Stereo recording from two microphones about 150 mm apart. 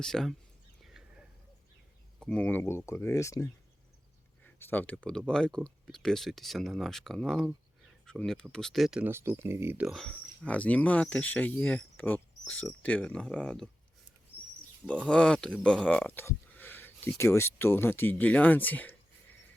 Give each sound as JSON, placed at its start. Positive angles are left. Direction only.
{"t": 0.0, "sound": "speech", "side_deg": 5}
{"t": 0.8, "sound": "a sound", "side_deg": -5}
{"t": 2.2, "sound": "speech", "side_deg": 5}
{"t": 9.8, "sound": "speech", "side_deg": 0}
{"t": 15.0, "sound": "speech", "side_deg": 5}